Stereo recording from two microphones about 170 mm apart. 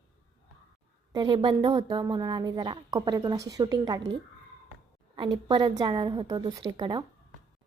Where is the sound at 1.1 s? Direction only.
25° right (ahead or behind).